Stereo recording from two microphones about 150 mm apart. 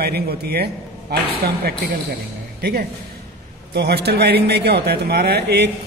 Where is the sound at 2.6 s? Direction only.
90° right.